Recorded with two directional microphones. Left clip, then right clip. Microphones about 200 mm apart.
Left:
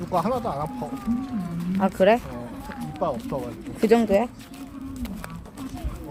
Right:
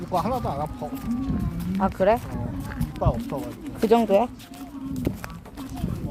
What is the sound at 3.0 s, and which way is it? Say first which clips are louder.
Speech: left 1 dB; 25° right (ahead or behind).